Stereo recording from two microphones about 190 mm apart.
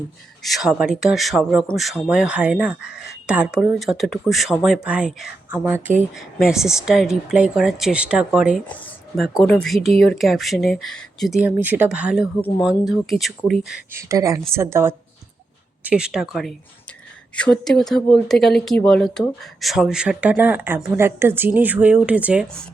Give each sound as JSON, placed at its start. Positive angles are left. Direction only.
{"t": 0.4, "sound": "speech", "side_deg": 0}
{"t": 11.4, "sound": "speech", "side_deg": -10}
{"t": 13.9, "sound": "speech", "side_deg": -15}